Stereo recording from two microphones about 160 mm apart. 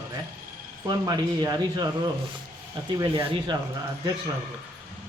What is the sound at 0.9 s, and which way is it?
Speech, 25° right (ahead or behind).